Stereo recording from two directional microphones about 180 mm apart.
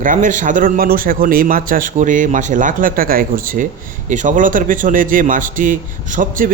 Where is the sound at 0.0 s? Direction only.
45° right (ahead or behind).